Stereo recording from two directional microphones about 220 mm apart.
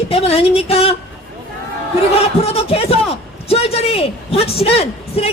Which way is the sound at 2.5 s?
25° left (ahead or behind).